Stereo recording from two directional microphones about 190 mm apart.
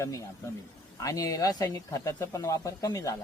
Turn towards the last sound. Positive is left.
turn(degrees=15)  # may be behind; listen again after turning